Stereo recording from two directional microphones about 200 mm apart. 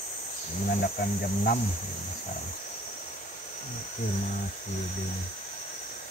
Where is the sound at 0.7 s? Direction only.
45° left (ahead or behind).